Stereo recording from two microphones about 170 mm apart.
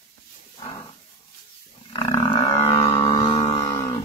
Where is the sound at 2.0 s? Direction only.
25° left (ahead or behind).